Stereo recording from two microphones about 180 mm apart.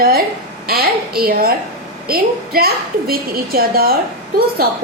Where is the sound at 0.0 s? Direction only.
55° right (ahead or behind).